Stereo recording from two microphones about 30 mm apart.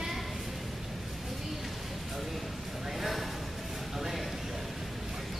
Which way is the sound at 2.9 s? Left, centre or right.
Centre.